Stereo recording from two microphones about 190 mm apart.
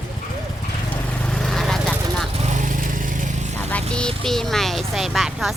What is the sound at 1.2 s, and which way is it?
Vehicle, 5° left (ahead or behind).